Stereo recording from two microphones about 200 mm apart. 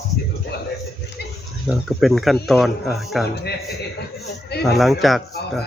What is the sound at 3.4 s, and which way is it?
Speech, 55° left (ahead or behind).